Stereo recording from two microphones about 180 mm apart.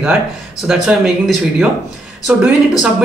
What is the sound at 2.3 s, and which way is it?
Speech, 5° right (ahead or behind).